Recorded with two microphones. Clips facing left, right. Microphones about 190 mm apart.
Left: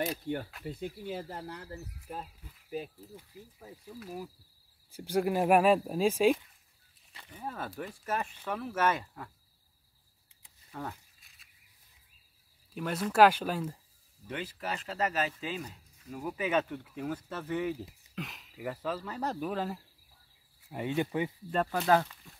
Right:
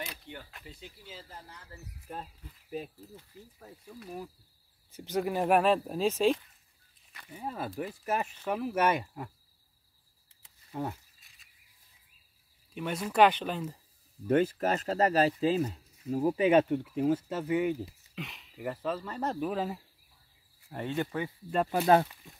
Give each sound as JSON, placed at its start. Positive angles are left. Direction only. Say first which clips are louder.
{"t": 0.0, "sound": "speech", "louder": "left 10 dB", "side_deg": 50}
{"t": 2.0, "sound": "speech", "louder": "right 2 dB", "side_deg": 5}
{"t": 7.2, "sound": "speech", "louder": "right 3 dB", "side_deg": -10}
{"t": 10.7, "sound": "speech", "louder": "right 5 dB", "side_deg": -20}
{"t": 11.1, "sound": "a sound", "louder": "even", "side_deg": 0}
{"t": 12.7, "sound": "speech", "louder": "left 1 dB", "side_deg": 0}
{"t": 14.2, "sound": "speech", "louder": "right 12 dB", "side_deg": -45}
{"t": 17.6, "sound": "speech", "louder": "right 2 dB", "side_deg": 0}
{"t": 20.7, "sound": "speech", "louder": "left 1 dB", "side_deg": 15}